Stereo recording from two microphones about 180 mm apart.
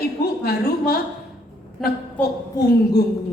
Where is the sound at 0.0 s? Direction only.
60° left (ahead or behind).